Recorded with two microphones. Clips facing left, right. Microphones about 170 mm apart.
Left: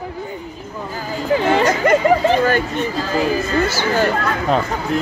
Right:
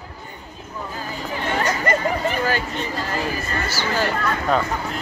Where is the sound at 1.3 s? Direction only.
90° left.